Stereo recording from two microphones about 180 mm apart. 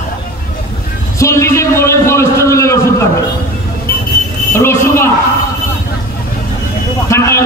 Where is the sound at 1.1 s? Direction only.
15° left (ahead or behind).